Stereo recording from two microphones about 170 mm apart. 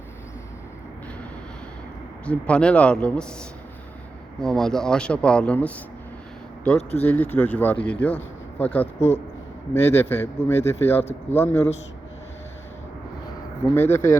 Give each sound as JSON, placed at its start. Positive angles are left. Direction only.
{"t": 2.2, "sound": "speech", "side_deg": 5}
{"t": 4.4, "sound": "speech", "side_deg": 5}
{"t": 9.0, "sound": "speech", "side_deg": 40}
{"t": 9.7, "sound": "speech", "side_deg": 15}
{"t": 13.7, "sound": "speech", "side_deg": 15}